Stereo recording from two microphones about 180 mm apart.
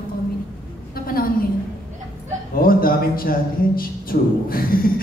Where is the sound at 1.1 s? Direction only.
55° left (ahead or behind).